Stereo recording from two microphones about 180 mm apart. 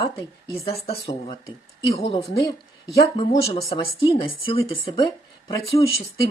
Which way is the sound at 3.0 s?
30° left (ahead or behind).